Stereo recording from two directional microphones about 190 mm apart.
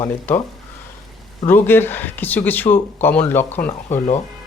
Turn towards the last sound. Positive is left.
turn(degrees=10)  # may be behind; listen again after turning